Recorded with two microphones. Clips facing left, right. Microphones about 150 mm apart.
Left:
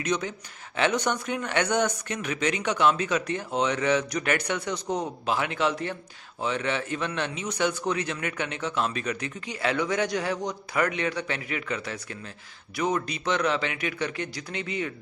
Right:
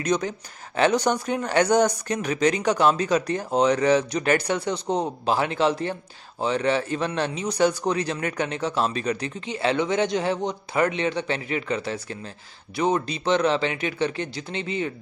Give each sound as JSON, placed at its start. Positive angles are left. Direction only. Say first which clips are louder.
{"t": 0.0, "sound": "a man's voice", "louder": "right 4 dB", "side_deg": -40}